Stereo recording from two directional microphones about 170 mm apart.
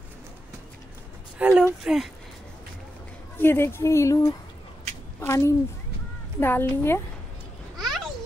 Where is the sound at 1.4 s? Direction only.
5° right (ahead or behind).